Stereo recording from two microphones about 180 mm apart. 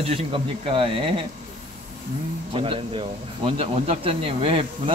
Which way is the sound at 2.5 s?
30° right (ahead or behind).